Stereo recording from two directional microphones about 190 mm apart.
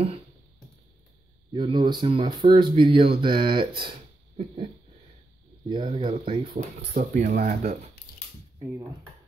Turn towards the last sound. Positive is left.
turn(degrees=-50)  # may be behind; listen again after turning